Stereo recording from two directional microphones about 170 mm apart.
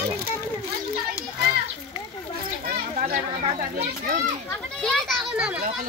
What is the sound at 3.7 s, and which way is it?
Speech, 60° right (ahead or behind).